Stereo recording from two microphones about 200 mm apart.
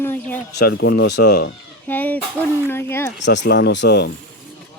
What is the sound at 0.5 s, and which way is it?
Speech, 60° left (ahead or behind).